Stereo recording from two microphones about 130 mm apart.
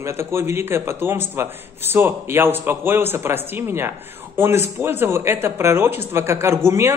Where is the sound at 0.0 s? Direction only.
20° right (ahead or behind).